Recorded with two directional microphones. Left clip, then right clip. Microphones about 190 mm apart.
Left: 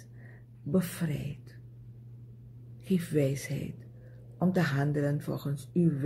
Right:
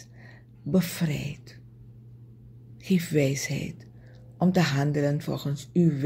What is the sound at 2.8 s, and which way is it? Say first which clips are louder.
Speech: right 4 dB; 35° right (ahead or behind).